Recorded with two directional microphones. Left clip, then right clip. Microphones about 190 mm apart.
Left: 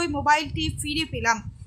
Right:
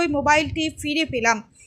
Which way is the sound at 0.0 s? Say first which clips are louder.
Right 3 dB; 15° right (ahead or behind).